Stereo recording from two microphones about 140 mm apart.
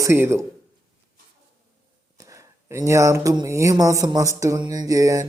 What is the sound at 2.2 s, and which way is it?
Speech, 20° right (ahead or behind).